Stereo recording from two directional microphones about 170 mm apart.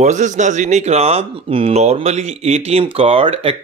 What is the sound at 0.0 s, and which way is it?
Speech, 45° right (ahead or behind).